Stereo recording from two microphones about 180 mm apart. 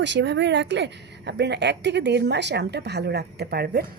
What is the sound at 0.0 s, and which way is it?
Speech, 80° right.